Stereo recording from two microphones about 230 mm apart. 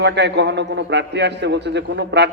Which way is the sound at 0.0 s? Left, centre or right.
Right.